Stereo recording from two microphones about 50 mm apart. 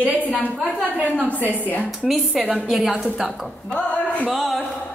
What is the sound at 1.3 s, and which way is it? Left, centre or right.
Speech, left.